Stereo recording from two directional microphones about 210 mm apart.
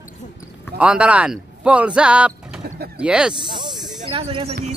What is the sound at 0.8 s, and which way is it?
Speech, 5° right (ahead or behind).